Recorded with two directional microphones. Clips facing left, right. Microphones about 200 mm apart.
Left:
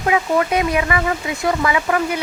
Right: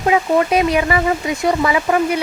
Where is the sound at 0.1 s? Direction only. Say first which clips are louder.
Right 3 dB; 25° right (ahead or behind).